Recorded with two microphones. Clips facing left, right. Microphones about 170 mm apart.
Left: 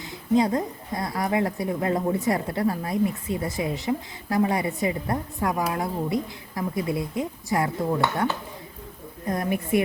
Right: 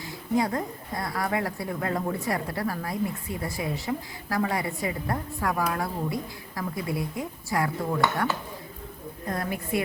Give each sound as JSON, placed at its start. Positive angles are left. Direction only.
{"t": 0.3, "sound": "a woman's voice", "side_deg": 20}